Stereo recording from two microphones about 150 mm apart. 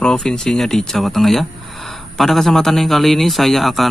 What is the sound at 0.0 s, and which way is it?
Speech, 5° left (ahead or behind).